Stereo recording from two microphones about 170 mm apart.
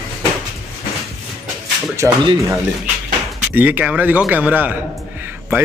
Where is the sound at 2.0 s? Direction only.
10° right (ahead or behind).